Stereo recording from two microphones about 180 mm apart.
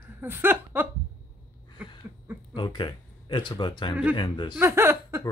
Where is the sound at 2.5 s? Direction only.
25° left (ahead or behind).